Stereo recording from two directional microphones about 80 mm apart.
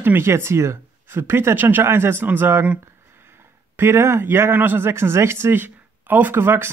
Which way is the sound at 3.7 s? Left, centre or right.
Right.